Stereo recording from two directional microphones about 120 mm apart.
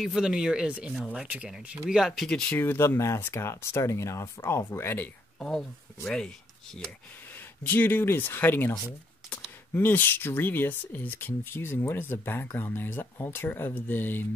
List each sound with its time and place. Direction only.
0.0 s speech: 5° right (ahead or behind)
2.6 s speech: 15° left (ahead or behind)
7.3 s speech: 15° left (ahead or behind)
9.8 s speech: 15° left (ahead or behind)